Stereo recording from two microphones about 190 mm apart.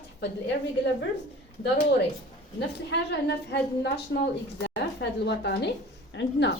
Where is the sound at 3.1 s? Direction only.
60° left (ahead or behind).